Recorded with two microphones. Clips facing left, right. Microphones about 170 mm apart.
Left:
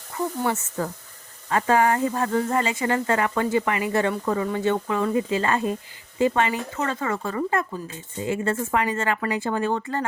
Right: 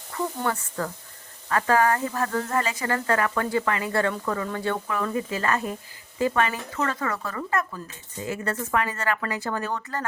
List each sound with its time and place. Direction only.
0.1 s sizzle: 20° left (ahead or behind)
0.5 s speech: 25° left (ahead or behind)